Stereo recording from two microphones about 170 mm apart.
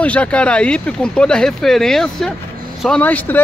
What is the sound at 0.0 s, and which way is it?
Speech, 10° left (ahead or behind).